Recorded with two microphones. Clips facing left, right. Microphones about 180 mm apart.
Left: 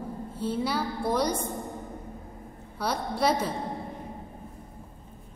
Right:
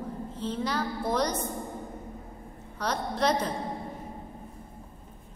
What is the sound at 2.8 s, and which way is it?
Music, 10° left (ahead or behind).